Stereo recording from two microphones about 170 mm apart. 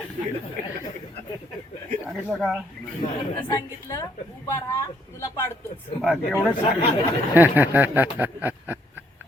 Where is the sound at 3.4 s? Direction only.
20° left (ahead or behind).